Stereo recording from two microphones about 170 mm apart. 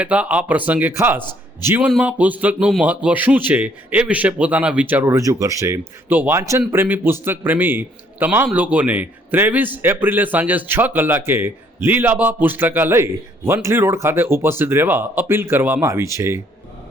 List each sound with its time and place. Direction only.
0.0 s a man's voice: 10° right (ahead or behind)